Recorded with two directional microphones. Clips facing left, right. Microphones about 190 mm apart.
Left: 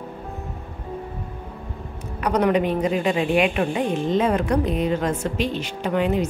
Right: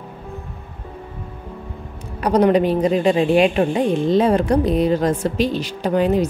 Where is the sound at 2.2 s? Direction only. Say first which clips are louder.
Right 5 dB; 35° right (ahead or behind).